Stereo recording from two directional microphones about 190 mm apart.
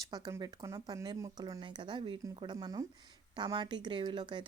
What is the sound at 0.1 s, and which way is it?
Speech, 20° right (ahead or behind).